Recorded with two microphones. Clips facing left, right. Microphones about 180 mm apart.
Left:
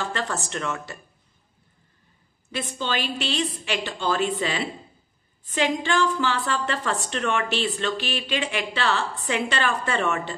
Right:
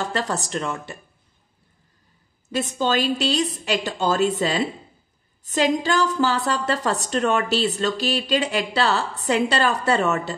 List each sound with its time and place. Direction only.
0.0 s a woman's voice: 40° right (ahead or behind)
2.5 s a woman's voice: 40° right (ahead or behind)